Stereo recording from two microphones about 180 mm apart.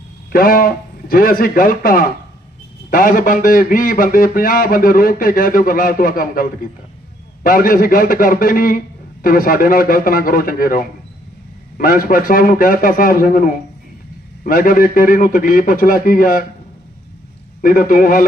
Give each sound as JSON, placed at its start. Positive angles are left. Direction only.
{"t": 0.3, "sound": "a man's voice", "side_deg": 55}
{"t": 17.6, "sound": "a man's voice", "side_deg": 50}